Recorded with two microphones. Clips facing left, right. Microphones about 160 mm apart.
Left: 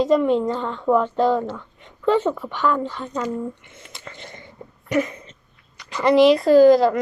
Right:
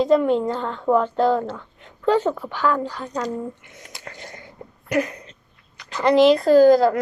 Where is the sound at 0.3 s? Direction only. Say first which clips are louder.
Left 1 dB; centre (ahead or behind).